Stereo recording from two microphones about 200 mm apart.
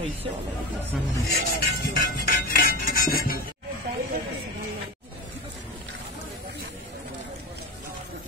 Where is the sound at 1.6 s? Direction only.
50° left (ahead or behind).